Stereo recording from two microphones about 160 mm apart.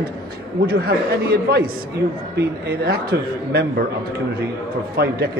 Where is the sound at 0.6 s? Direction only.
85° right.